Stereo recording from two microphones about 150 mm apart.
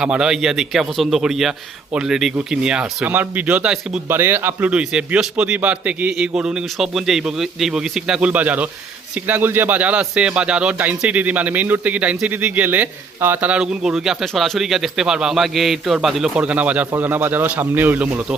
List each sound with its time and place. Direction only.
0.0 s a man's voice: 5° right (ahead or behind)